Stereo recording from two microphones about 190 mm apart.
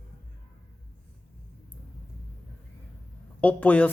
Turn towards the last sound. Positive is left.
turn(degrees=10)  # may be behind; listen again after turning